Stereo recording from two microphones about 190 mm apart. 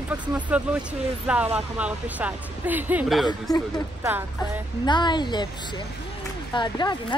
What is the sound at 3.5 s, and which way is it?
Speech, 20° left (ahead or behind).